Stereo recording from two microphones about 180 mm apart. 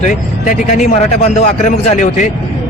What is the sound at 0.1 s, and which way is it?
Speech, 45° left (ahead or behind).